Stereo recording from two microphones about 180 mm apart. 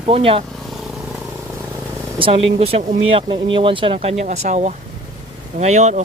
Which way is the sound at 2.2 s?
30° right (ahead or behind).